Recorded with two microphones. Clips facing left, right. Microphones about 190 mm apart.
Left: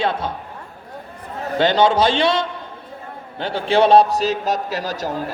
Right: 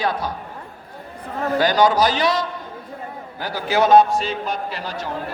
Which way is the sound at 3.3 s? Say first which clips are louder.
Left 3 dB; 25° left (ahead or behind).